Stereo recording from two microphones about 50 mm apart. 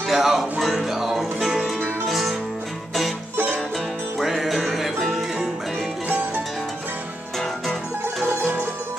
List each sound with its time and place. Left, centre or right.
0.1 s music: centre
4.2 s music: centre
6.0 s music: right